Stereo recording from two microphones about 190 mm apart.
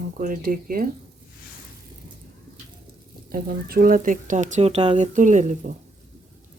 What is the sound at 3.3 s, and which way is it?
Speech, 50° right (ahead or behind).